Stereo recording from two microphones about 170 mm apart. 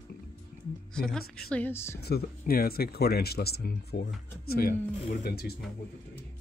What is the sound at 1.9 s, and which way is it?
Speech, 65° left (ahead or behind).